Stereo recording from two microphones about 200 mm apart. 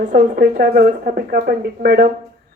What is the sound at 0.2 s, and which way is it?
Speech, 50° right (ahead or behind).